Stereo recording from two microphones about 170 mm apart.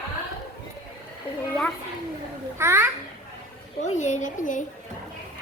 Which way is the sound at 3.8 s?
45° left (ahead or behind).